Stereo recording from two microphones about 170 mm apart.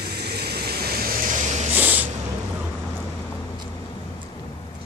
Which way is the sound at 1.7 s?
10° right (ahead or behind).